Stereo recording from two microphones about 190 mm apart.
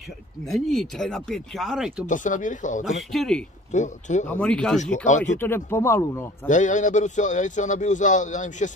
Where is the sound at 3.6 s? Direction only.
40° left (ahead or behind).